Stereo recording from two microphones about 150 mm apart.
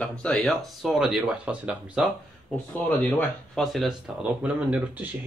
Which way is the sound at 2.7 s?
10° left (ahead or behind).